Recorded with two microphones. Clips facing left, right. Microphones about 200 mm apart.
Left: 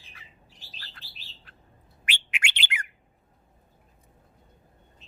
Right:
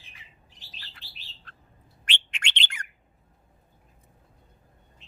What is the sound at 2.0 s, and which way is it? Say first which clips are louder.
Bird: left 2 dB; 10° left (ahead or behind).